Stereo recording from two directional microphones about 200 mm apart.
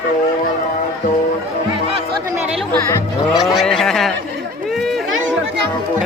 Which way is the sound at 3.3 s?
Centre (ahead or behind).